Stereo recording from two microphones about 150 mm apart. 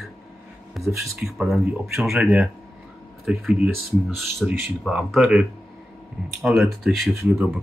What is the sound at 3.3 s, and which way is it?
Speech, centre (ahead or behind).